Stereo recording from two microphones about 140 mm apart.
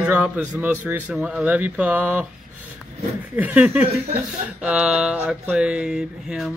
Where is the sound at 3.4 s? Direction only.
10° right (ahead or behind).